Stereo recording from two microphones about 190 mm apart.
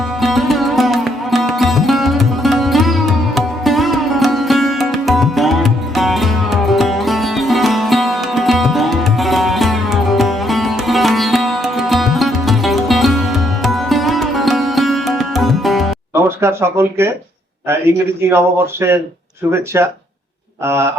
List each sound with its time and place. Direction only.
0.2 s music: centre (ahead or behind)
16.4 s speech: 15° right (ahead or behind)
18.3 s speech: 15° right (ahead or behind)